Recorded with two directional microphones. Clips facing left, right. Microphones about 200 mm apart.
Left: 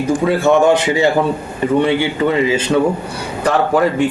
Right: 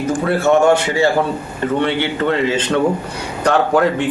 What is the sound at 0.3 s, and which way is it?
A man's voice, 15° left (ahead or behind).